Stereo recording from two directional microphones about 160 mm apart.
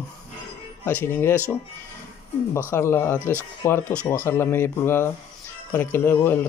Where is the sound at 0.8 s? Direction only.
15° left (ahead or behind).